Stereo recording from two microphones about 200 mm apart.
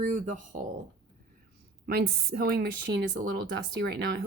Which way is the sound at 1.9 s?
50° right (ahead or behind).